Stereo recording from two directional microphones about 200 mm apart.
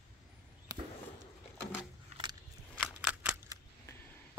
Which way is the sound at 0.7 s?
20° right (ahead or behind).